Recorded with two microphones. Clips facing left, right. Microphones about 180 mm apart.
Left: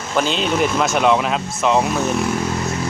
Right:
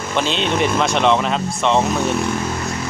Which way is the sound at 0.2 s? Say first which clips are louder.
Left 1 dB; centre (ahead or behind).